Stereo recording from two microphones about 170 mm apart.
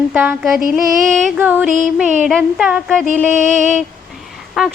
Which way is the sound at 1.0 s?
Centre (ahead or behind).